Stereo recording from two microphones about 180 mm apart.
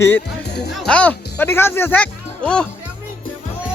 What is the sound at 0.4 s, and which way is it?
Music, 65° left (ahead or behind).